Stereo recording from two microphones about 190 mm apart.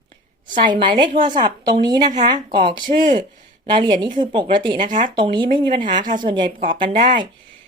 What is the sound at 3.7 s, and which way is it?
A woman's voice, 25° right (ahead or behind).